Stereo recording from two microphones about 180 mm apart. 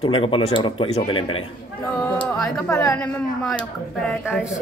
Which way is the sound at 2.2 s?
5° left (ahead or behind).